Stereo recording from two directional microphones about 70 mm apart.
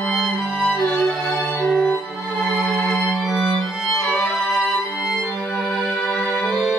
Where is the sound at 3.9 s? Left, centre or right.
Centre.